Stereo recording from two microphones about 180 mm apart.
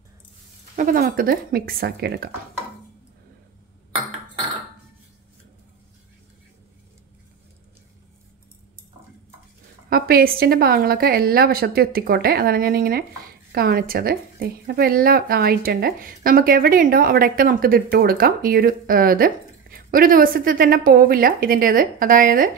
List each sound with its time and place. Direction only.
0.7 s a woman's voice: 50° right (ahead or behind); by 2.2 s 65° right (ahead or behind)
9.8 s a woman's voice: 55° right (ahead or behind)